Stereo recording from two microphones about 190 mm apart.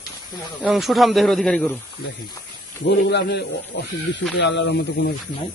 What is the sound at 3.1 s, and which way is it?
A man's voice, 60° left (ahead or behind).